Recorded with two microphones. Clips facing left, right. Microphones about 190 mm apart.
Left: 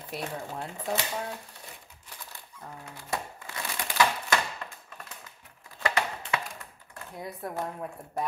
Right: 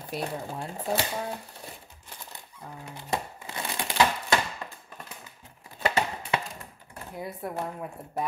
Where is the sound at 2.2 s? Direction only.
20° right (ahead or behind).